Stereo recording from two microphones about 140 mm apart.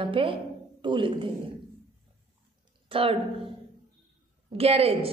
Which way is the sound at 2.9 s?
40° right (ahead or behind).